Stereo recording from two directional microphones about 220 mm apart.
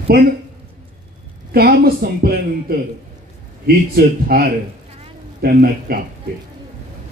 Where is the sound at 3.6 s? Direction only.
45° right (ahead or behind).